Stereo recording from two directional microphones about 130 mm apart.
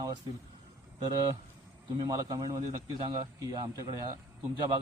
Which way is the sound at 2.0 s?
25° right (ahead or behind).